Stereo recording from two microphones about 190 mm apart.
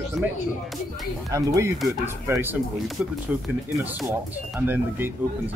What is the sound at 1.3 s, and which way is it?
Speech, 15° right (ahead or behind).